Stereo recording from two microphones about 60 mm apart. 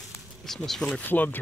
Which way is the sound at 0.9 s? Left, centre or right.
Left.